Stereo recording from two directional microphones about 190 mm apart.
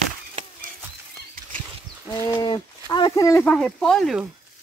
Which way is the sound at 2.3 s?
20° left (ahead or behind).